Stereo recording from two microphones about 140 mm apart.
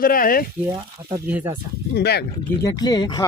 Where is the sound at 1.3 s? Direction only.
10° right (ahead or behind).